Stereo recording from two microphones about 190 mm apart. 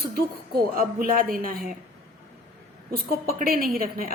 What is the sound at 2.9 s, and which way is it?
A woman's voice, 50° right (ahead or behind).